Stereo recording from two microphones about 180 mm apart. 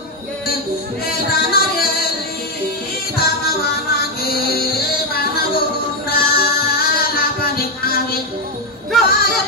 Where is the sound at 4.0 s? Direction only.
60° left (ahead or behind).